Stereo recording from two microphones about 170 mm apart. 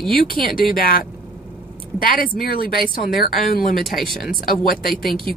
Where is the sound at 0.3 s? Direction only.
60° left (ahead or behind).